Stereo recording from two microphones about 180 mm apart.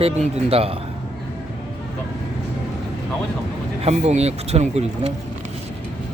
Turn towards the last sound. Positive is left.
turn(degrees=-35)  # may be behind; listen again after turning